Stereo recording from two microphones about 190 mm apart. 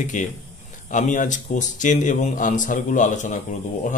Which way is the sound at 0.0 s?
40° left (ahead or behind).